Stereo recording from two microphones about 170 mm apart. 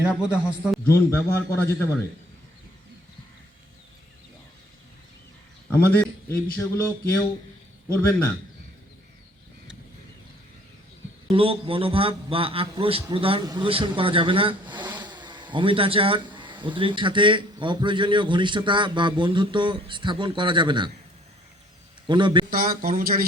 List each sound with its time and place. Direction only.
0.0 s speech: 5° right (ahead or behind)
0.9 s speech: 15° left (ahead or behind)
5.9 s speech: 15° left (ahead or behind)
11.3 s a man's voice: 35° right (ahead or behind)
14.8 s vehicle: 10° right (ahead or behind)
15.1 s speech: 25° right (ahead or behind)
22.0 s a man's voice: 25° right (ahead or behind)
22.4 s speech: 60° right (ahead or behind)